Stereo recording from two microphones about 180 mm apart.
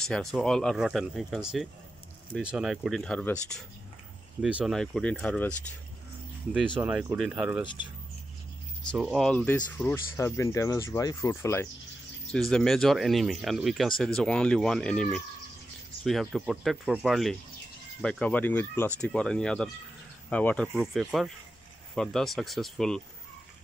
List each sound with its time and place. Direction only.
0.1 s speech: centre (ahead or behind)
4.4 s speech: 5° right (ahead or behind)
6.8 s speech: 10° right (ahead or behind)
7.6 s speech: 25° left (ahead or behind)
8.9 s speech: centre (ahead or behind); by 11.7 s 15° left (ahead or behind)
12.3 s speech: 5° left (ahead or behind)
20.7 s speech: 5° right (ahead or behind)